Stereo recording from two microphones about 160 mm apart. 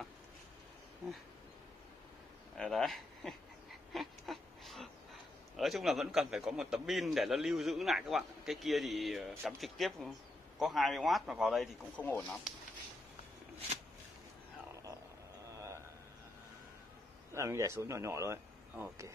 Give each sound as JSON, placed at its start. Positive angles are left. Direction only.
{"t": 2.5, "sound": "speech", "side_deg": 0}
{"t": 3.9, "sound": "a sound", "side_deg": 0}
{"t": 5.6, "sound": "a man's voice", "side_deg": 0}
{"t": 12.0, "sound": "speech", "side_deg": 10}
{"t": 17.3, "sound": "speech", "side_deg": -15}